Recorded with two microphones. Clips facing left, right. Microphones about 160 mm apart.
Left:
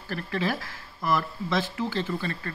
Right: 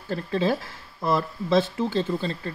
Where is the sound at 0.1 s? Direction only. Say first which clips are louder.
Right 5 dB; 25° right (ahead or behind).